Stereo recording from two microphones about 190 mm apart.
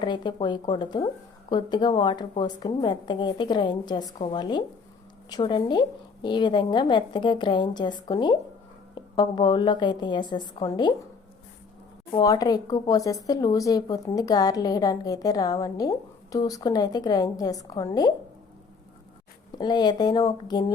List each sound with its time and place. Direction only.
0.0 s speech: 25° left (ahead or behind)
12.1 s speech: 20° left (ahead or behind)
19.5 s speech: 20° left (ahead or behind)